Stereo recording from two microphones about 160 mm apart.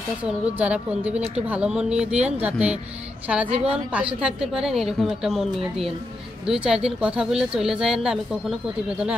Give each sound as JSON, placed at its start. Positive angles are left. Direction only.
{"t": 0.2, "sound": "speech", "side_deg": -10}
{"t": 3.4, "sound": "a woman's voice", "side_deg": -40}
{"t": 3.9, "sound": "a woman's voice", "side_deg": -5}